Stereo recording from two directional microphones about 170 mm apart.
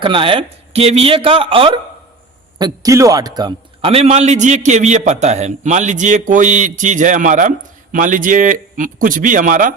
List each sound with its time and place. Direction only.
0.0 s a man's voice: 30° right (ahead or behind); by 9.7 s 50° right (ahead or behind)